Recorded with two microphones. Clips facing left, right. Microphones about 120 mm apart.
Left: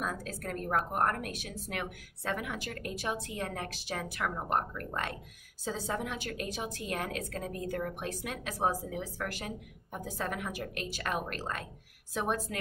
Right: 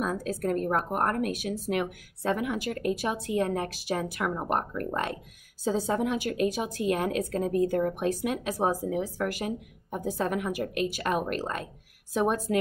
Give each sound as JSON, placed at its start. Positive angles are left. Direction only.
{"t": 0.0, "sound": "a woman's voice", "side_deg": -15}